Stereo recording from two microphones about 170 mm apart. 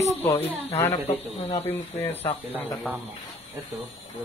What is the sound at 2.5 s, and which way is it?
Speech, centre (ahead or behind).